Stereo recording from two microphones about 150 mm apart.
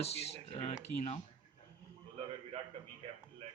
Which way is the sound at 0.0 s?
45° left (ahead or behind).